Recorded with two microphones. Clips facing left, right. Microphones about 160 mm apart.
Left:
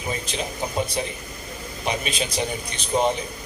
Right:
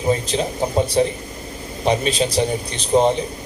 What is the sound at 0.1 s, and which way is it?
A man's voice, 35° right (ahead or behind).